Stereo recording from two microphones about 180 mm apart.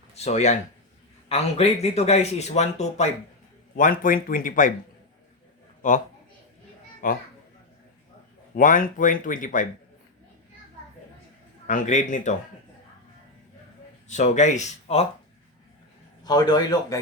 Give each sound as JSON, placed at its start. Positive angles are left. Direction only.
{"t": 0.1, "sound": "speech", "side_deg": 40}
{"t": 5.8, "sound": "speech", "side_deg": 45}
{"t": 7.0, "sound": "speech", "side_deg": 45}
{"t": 8.5, "sound": "speech", "side_deg": 50}
{"t": 11.7, "sound": "speech", "side_deg": 45}
{"t": 14.1, "sound": "speech", "side_deg": 40}
{"t": 16.2, "sound": "a man's voice", "side_deg": 20}